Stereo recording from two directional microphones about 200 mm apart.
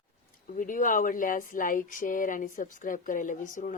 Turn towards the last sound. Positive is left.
turn(degrees=40)  # may be behind; listen again after turning